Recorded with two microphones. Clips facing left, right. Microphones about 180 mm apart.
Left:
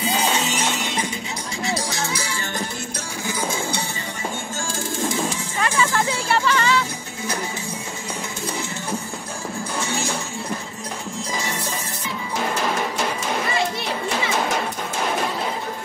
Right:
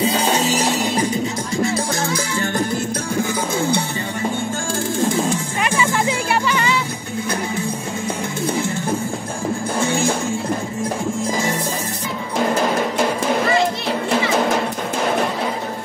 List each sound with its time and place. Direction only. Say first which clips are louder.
0.0 s music: right 5 dB; 35° right (ahead or behind)
3.3 s music: right 6 dB; 55° right (ahead or behind)
5.6 s music: left 1 dB; 15° right (ahead or behind)
9.8 s music: right 7 dB; 55° right (ahead or behind)